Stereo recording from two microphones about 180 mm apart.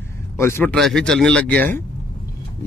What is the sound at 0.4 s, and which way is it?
Speech, 15° left (ahead or behind).